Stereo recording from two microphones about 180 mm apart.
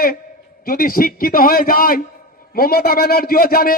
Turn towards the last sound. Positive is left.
turn(degrees=55)  # may be behind; listen again after turning